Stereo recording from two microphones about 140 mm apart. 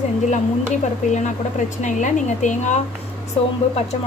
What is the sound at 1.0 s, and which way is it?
A woman's voice, 60° left (ahead or behind).